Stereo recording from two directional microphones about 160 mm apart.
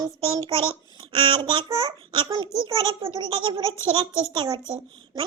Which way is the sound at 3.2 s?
30° right (ahead or behind).